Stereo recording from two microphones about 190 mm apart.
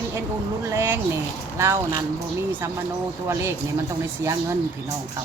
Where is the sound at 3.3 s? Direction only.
15° right (ahead or behind).